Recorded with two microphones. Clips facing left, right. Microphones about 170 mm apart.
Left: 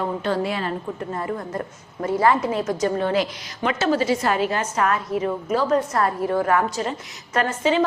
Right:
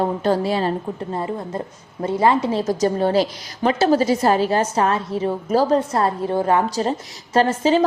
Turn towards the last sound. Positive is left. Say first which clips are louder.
# right 4 dB
turn(degrees=-35)  # may be behind; listen again after turning